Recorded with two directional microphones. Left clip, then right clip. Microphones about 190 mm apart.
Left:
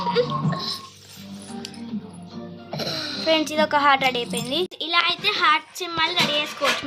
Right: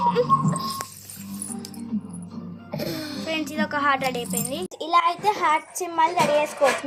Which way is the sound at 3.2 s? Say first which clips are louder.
Left 8 dB; 30° left (ahead or behind).